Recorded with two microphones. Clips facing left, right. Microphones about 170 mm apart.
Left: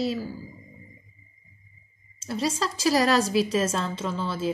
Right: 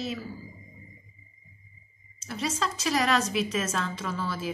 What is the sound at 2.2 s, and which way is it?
A woman's voice, 30° left (ahead or behind).